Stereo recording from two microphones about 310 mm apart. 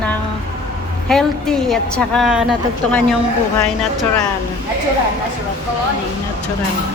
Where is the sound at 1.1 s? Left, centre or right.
Centre.